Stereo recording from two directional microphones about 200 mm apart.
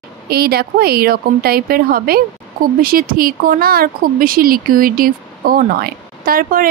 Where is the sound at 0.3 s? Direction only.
50° right (ahead or behind).